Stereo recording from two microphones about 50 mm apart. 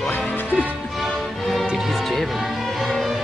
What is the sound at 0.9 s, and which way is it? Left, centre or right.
Music, centre.